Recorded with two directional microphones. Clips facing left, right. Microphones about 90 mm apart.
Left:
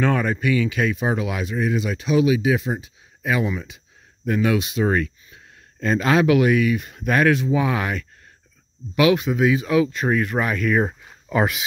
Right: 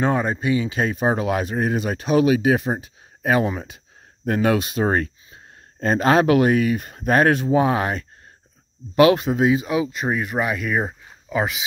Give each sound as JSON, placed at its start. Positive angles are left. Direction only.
{"t": 0.0, "sound": "speech", "side_deg": -25}